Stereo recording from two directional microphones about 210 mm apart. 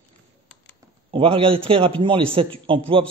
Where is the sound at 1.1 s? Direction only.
25° right (ahead or behind).